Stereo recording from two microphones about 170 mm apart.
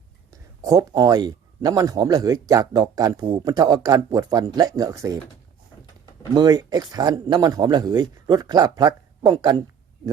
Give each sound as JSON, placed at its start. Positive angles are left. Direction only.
{"t": 0.3, "sound": "speech", "side_deg": -20}
{"t": 6.3, "sound": "speech", "side_deg": -25}